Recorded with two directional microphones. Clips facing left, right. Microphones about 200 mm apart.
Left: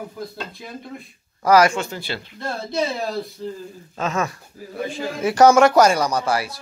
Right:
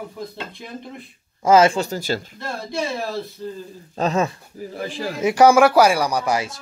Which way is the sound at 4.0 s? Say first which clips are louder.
Right 4 dB; 30° right (ahead or behind).